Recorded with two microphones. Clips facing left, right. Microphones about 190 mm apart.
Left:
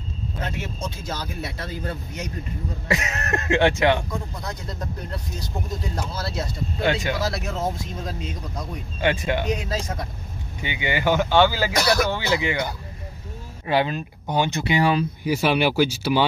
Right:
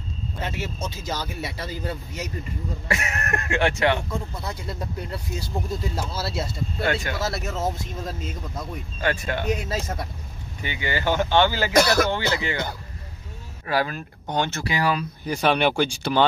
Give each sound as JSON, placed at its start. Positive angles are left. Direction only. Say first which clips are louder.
{"t": 0.4, "sound": "speech", "louder": "even", "side_deg": -5}
{"t": 2.9, "sound": "speech", "louder": "left 3 dB", "side_deg": 20}
{"t": 4.4, "sound": "speech", "louder": "even", "side_deg": -5}
{"t": 6.8, "sound": "speech", "louder": "left 3 dB", "side_deg": 20}
{"t": 7.2, "sound": "speech", "louder": "left 1 dB", "side_deg": 0}
{"t": 9.0, "sound": "speech", "louder": "left 3 dB", "side_deg": 20}
{"t": 9.5, "sound": "speech", "louder": "even", "side_deg": -5}
{"t": 10.6, "sound": "speech", "louder": "left 2 dB", "side_deg": 20}
{"t": 13.7, "sound": "speech", "louder": "left 3 dB", "side_deg": 25}
{"t": 14.2, "sound": "speech", "louder": "left 2 dB", "side_deg": 10}
{"t": 14.6, "sound": "speech", "louder": "left 4 dB", "side_deg": 25}
{"t": 15.2, "sound": "speech", "louder": "even", "side_deg": 5}